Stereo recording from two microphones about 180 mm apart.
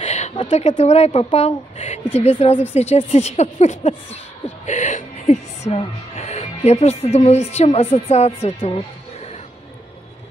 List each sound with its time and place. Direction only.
0.0 s speech: 40° left (ahead or behind)